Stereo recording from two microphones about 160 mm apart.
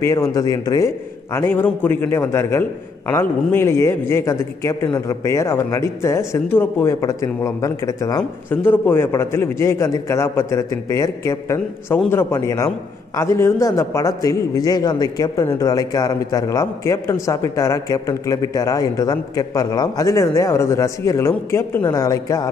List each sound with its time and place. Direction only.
0.0 s a man's voice: 20° left (ahead or behind)